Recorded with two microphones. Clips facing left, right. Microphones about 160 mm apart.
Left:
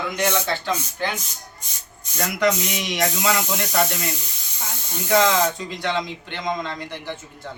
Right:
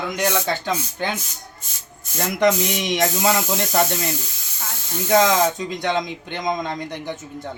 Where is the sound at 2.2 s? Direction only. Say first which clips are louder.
Right 3 dB; 25° right (ahead or behind).